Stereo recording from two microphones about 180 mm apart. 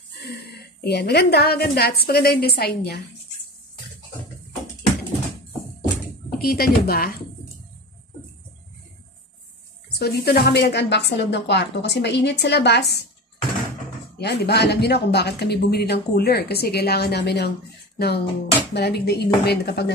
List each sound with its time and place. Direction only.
0.2 s speech: 65° left (ahead or behind)
6.3 s speech: 55° left (ahead or behind)
9.9 s speech: 60° left (ahead or behind)
14.2 s speech: 65° left (ahead or behind)